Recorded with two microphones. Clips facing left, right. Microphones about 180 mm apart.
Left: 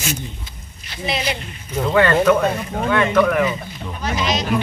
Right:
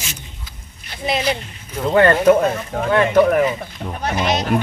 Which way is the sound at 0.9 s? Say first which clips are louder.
Right 3 dB; 45° right (ahead or behind).